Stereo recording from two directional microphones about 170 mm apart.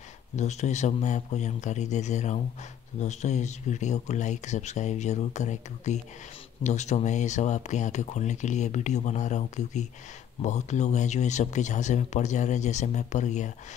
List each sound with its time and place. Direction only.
0.4 s speech: 45° left (ahead or behind)